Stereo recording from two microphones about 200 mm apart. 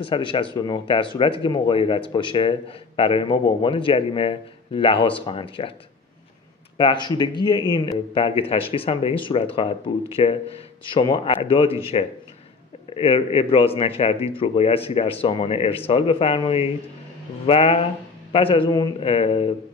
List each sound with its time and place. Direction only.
0.0 s a man's voice: 25° left (ahead or behind)
6.8 s a man's voice: 20° left (ahead or behind)